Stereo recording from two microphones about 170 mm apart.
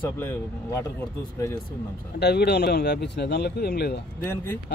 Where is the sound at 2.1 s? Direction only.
75° left (ahead or behind).